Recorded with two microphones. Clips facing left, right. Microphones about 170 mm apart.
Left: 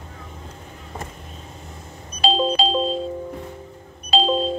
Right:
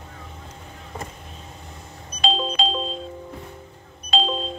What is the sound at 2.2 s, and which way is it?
Music, 35° left (ahead or behind).